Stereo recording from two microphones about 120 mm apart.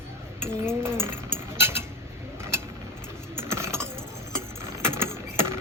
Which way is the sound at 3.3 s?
20° right (ahead or behind).